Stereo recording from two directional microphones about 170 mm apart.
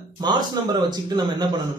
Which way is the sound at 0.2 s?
25° right (ahead or behind).